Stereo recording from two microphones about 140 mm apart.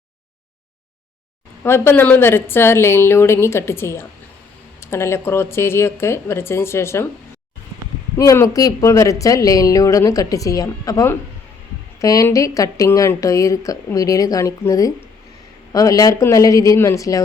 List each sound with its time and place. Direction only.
1.6 s a woman's voice: 15° left (ahead or behind)
8.1 s speech: 20° left (ahead or behind)